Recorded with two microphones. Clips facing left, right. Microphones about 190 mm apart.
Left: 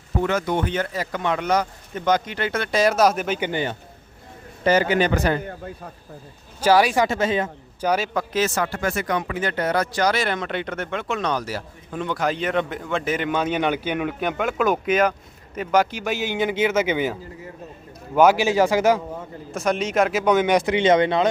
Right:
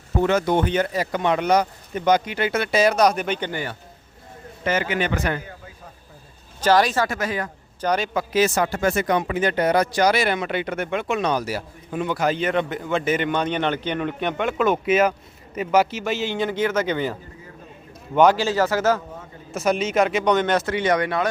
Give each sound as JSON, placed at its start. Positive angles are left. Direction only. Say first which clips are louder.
{"t": 0.2, "sound": "speech", "louder": "right 3 dB", "side_deg": -25}
{"t": 3.5, "sound": "speech", "louder": "left 4 dB", "side_deg": 20}
{"t": 4.6, "sound": "speech", "louder": "left 5 dB", "side_deg": 35}
{"t": 5.4, "sound": "speech", "louder": "left 7 dB", "side_deg": 55}
{"t": 6.6, "sound": "speech", "louder": "left 1 dB", "side_deg": 10}
{"t": 7.1, "sound": "speech", "louder": "left 4 dB", "side_deg": 25}
{"t": 7.8, "sound": "speech", "louder": "even", "side_deg": 5}
{"t": 16.3, "sound": "a man's voice", "louder": "left 3 dB", "side_deg": 10}
{"t": 19.5, "sound": "speech", "louder": "right 1 dB", "side_deg": 0}